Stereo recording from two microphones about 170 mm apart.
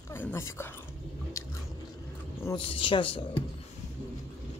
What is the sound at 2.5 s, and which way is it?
Speech, 30° left (ahead or behind).